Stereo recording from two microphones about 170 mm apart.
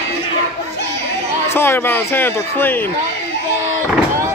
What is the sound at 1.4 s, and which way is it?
Speech, 15° left (ahead or behind).